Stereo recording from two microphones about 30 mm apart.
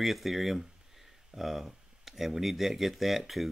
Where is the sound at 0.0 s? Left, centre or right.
Centre.